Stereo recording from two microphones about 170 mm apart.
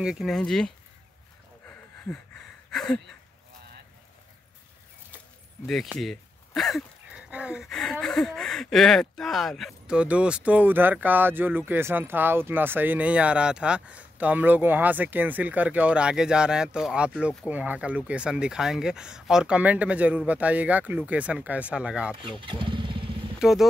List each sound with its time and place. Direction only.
0.0 s speech: centre (ahead or behind)
2.0 s a sound: 5° left (ahead or behind)
5.7 s speech: centre (ahead or behind)
22.4 s motorcycle: 30° right (ahead or behind)
23.4 s speech: centre (ahead or behind)